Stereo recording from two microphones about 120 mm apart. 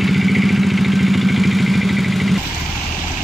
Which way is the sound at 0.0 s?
Centre (ahead or behind).